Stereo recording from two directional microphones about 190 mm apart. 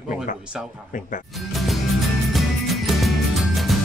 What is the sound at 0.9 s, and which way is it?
Speech, 45° left (ahead or behind).